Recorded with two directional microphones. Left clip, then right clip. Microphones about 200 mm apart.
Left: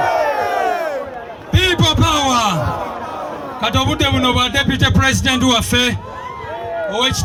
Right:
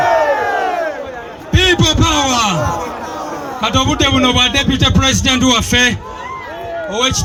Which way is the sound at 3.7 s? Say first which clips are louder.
Right 4 dB; 5° left (ahead or behind).